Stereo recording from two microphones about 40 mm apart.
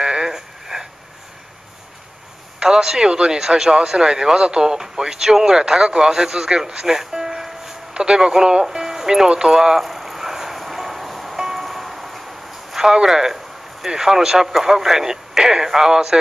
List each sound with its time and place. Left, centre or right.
0.0 s a sound: centre
2.6 s speech: centre
7.0 s music: centre
7.9 s speech: centre
9.5 s a sound: centre
11.6 s music: centre
12.9 s speech: centre